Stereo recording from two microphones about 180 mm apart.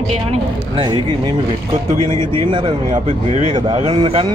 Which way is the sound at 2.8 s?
40° right (ahead or behind).